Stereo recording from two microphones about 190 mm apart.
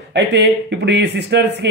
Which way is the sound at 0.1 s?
65° right (ahead or behind).